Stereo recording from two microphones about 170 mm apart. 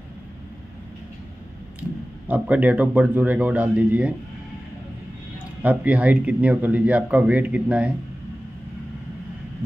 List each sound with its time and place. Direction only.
1.8 s speech: 10° right (ahead or behind)
5.6 s speech: 10° right (ahead or behind)